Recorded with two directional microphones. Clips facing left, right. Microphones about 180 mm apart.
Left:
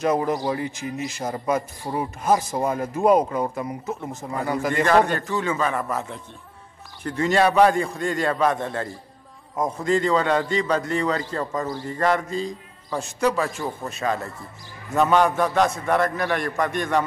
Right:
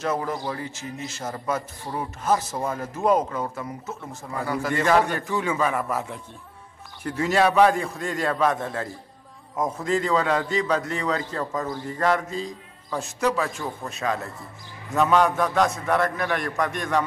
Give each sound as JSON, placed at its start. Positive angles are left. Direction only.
{"t": 0.0, "sound": "speech", "side_deg": 15}
{"t": 4.8, "sound": "a man's voice", "side_deg": -10}